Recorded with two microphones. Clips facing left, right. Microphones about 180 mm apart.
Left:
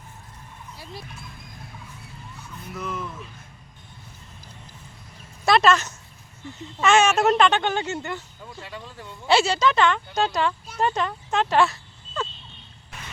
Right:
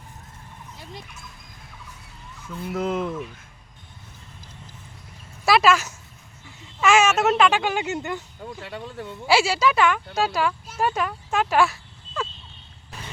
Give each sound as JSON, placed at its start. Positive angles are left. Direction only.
{"t": 2.7, "sound": "speech", "side_deg": -90}
{"t": 5.5, "sound": "speech", "side_deg": -5}
{"t": 8.6, "sound": "speech", "side_deg": -60}
{"t": 9.2, "sound": "speech", "side_deg": -10}